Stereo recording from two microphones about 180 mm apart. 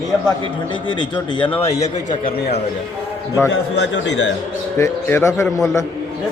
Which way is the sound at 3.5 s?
75° left (ahead or behind).